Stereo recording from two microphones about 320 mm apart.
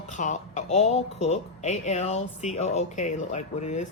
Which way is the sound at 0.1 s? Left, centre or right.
Left.